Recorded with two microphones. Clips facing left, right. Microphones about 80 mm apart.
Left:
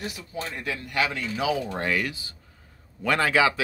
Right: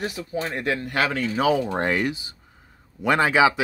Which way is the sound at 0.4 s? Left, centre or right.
Right.